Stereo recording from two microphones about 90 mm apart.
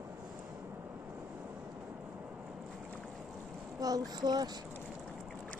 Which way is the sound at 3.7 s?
45° right (ahead or behind).